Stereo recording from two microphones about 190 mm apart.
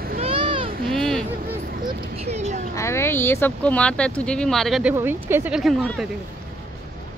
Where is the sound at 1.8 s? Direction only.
35° right (ahead or behind).